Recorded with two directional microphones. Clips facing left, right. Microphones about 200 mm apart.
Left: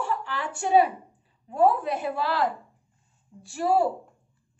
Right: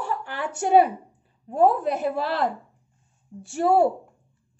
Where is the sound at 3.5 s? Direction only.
55° right (ahead or behind).